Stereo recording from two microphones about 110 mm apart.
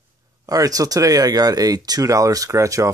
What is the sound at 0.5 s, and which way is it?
Speech, 35° right (ahead or behind).